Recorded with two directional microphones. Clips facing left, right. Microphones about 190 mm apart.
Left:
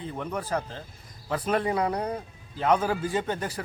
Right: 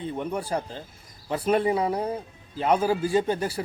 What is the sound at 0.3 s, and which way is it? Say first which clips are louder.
Speech: even; 10° right (ahead or behind).